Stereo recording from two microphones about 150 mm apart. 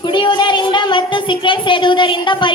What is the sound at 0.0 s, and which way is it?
A woman's voice, 35° left (ahead or behind).